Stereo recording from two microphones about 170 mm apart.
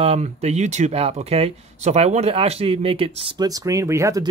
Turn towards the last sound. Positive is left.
turn(degrees=-15)  # may be behind; listen again after turning